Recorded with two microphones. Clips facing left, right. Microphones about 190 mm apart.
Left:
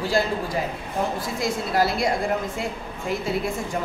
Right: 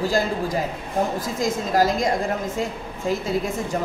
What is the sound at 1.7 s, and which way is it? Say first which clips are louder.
Speech: right 3 dB; 40° right (ahead or behind).